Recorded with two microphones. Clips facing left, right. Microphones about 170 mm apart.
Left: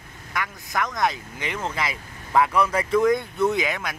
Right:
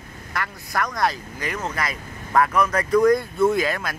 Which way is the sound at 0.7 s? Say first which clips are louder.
Right 1 dB; centre (ahead or behind).